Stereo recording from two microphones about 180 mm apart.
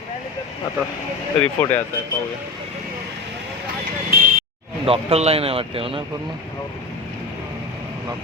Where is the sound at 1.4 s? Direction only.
10° left (ahead or behind).